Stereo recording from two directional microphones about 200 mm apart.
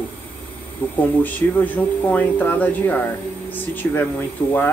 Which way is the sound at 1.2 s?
10° left (ahead or behind).